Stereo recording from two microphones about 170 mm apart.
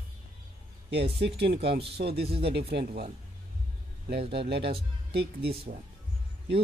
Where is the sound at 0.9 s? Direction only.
80° right.